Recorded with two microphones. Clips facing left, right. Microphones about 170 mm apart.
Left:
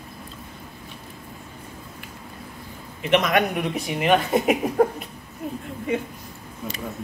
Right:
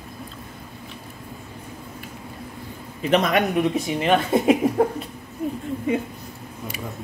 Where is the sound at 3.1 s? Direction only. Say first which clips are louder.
Right 1 dB; 30° right (ahead or behind).